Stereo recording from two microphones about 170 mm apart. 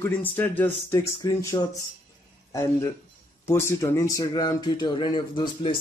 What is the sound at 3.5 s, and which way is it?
Speech, 15° left (ahead or behind).